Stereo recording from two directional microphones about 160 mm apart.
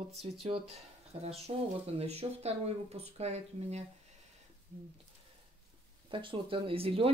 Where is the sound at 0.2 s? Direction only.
40° right (ahead or behind).